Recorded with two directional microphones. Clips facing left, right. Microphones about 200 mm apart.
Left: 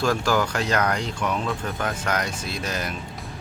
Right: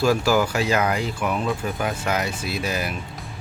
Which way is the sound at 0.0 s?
5° right (ahead or behind).